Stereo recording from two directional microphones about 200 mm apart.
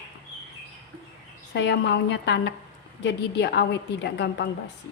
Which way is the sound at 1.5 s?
60° left (ahead or behind).